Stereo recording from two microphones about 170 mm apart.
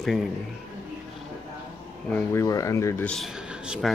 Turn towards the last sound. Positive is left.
turn(degrees=-5)  # may be behind; listen again after turning